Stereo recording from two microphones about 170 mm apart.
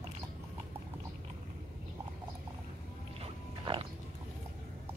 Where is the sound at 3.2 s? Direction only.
30° right (ahead or behind).